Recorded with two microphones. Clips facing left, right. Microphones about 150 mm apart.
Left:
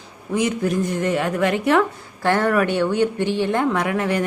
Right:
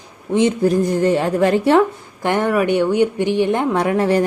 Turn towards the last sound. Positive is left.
turn(degrees=-35)  # may be behind; listen again after turning